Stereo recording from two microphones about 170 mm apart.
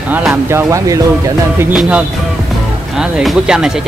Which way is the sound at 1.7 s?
5° right (ahead or behind).